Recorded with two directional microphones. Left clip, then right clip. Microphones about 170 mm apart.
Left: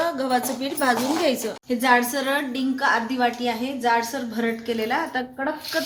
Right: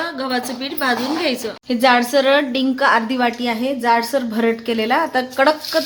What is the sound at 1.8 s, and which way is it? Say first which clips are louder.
A woman's voice: right 6 dB; 55° right (ahead or behind).